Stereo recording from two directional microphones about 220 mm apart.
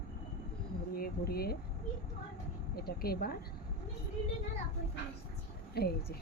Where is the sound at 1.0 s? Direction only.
45° left (ahead or behind).